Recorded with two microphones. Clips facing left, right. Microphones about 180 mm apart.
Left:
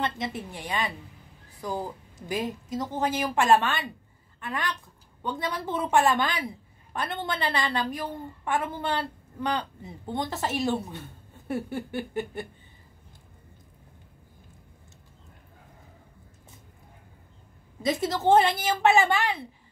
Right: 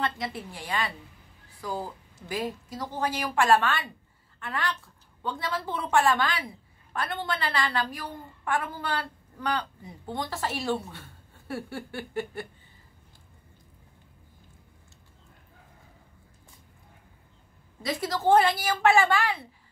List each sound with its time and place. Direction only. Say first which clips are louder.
0.0 s a woman's voice: left 1 dB; 20° left (ahead or behind)
17.8 s a woman's voice: left 2 dB; 25° left (ahead or behind)